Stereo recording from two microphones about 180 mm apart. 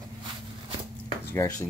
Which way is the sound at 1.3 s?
15° left (ahead or behind).